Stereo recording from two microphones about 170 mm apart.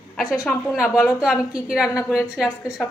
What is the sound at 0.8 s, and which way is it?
A woman's voice, 5° right (ahead or behind).